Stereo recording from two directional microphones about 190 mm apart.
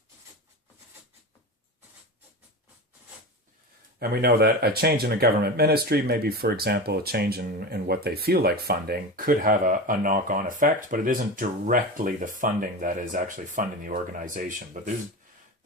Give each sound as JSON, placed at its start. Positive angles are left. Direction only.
{"t": 4.0, "sound": "speech", "side_deg": -55}